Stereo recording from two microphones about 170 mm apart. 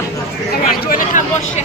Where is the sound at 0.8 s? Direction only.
55° left (ahead or behind).